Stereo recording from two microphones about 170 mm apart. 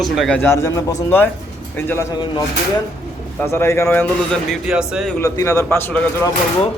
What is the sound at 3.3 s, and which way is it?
A man's voice, 15° left (ahead or behind).